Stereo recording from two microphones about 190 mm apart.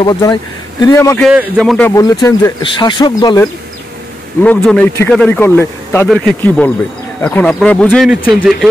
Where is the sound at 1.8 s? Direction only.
15° left (ahead or behind).